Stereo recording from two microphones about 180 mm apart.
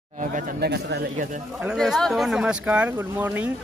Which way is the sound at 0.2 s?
45° right (ahead or behind).